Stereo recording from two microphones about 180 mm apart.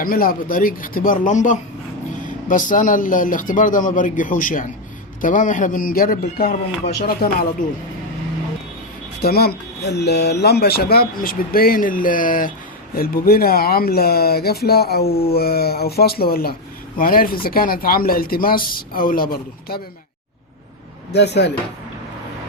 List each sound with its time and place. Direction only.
0.0 s speech: 50° left (ahead or behind)
9.2 s speech: 60° left (ahead or behind)
21.1 s speech: 70° left (ahead or behind)